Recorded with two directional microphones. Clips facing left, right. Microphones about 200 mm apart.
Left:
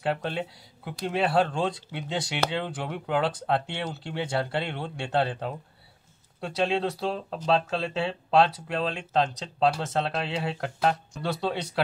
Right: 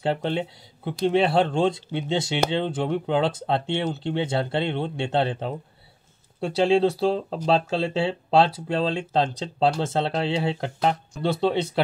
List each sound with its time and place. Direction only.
0.0 s speech: 25° right (ahead or behind)